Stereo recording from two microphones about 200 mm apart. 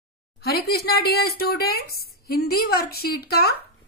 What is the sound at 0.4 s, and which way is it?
A woman's voice, 50° left (ahead or behind).